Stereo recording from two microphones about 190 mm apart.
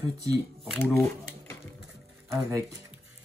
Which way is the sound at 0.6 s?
Centre (ahead or behind).